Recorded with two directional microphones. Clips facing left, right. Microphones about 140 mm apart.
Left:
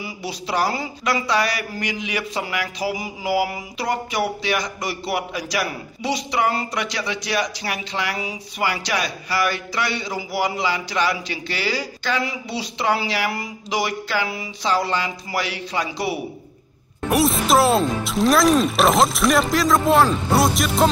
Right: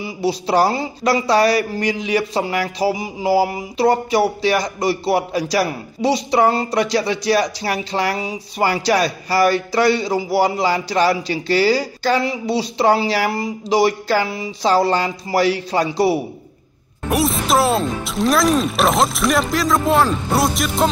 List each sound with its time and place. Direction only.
0.0 s speech: 30° right (ahead or behind)
17.1 s speech: centre (ahead or behind)